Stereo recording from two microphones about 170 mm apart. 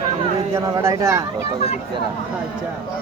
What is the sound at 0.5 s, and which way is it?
Speech, 15° right (ahead or behind).